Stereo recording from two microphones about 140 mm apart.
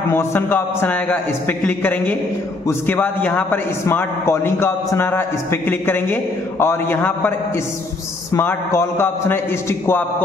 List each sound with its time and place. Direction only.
0.1 s a man's voice: 15° left (ahead or behind)